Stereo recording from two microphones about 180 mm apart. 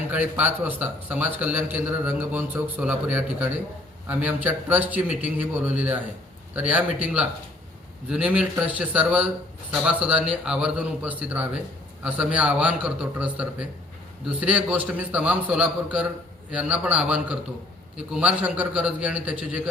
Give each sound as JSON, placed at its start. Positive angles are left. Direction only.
{"t": 0.1, "sound": "a man's voice", "side_deg": -10}